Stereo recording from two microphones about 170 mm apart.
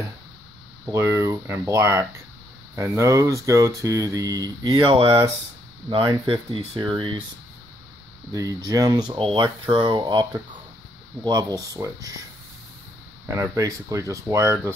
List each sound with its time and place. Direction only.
0.8 s speech: 15° right (ahead or behind)
8.3 s speech: 20° right (ahead or behind)
13.3 s speech: 15° right (ahead or behind)